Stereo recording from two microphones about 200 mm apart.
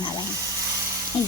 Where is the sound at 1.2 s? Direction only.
25° left (ahead or behind).